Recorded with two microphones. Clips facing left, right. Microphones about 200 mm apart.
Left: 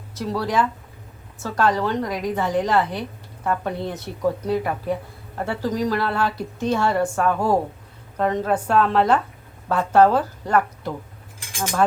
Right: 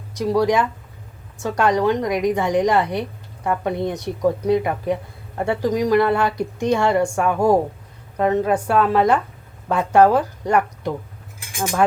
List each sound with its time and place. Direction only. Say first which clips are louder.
0.2 s speech: right 5 dB; 15° right (ahead or behind)
11.3 s cutlery: right 2 dB; 10° right (ahead or behind)